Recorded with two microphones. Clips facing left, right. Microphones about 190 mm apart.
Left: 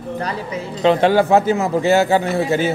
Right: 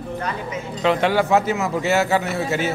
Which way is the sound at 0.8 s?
30° left (ahead or behind).